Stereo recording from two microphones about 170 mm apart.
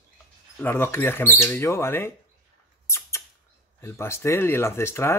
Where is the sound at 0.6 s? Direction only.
10° left (ahead or behind).